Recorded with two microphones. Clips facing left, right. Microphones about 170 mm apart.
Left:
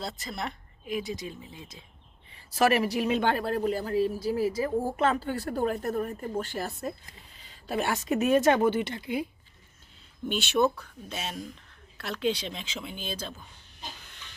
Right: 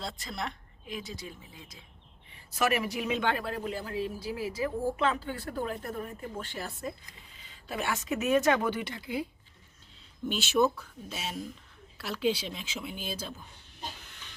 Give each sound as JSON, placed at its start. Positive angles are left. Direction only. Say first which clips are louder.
{"t": 0.0, "sound": "speech", "louder": "left 2 dB", "side_deg": 0}
{"t": 1.1, "sound": "speech", "louder": "left 6 dB", "side_deg": 20}
{"t": 10.2, "sound": "speech", "louder": "left 1 dB", "side_deg": 0}